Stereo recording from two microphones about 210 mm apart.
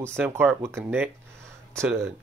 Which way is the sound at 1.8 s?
10° right (ahead or behind).